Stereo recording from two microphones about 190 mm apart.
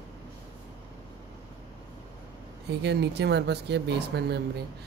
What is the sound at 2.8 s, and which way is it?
Speech, 60° right (ahead or behind).